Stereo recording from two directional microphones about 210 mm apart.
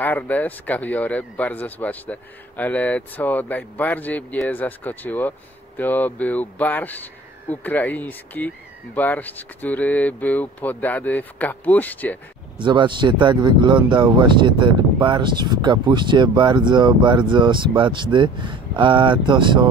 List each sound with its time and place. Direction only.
0.0 s speech: 10° left (ahead or behind)
12.5 s speech: 20° right (ahead or behind)